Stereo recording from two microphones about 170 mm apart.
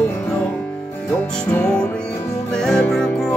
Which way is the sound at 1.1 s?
10° left (ahead or behind).